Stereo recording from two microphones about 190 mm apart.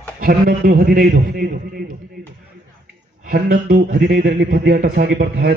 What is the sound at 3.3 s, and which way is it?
Speech, 50° right (ahead or behind).